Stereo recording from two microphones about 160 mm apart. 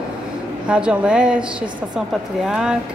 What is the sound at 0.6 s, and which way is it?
A woman's voice, 5° right (ahead or behind).